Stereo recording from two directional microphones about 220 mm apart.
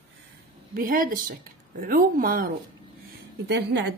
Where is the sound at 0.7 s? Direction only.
40° right (ahead or behind).